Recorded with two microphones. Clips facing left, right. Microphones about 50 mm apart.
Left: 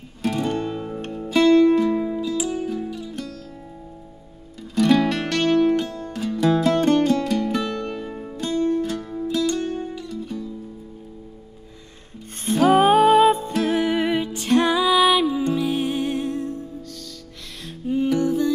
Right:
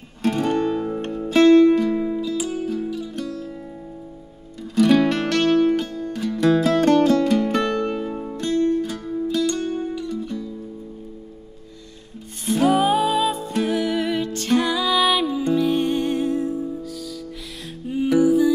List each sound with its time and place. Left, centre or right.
0.2 s guitar: centre
0.9 s music: centre
4.7 s music: centre
12.6 s music: left
13.7 s music: left
15.0 s music: centre
17.6 s music: centre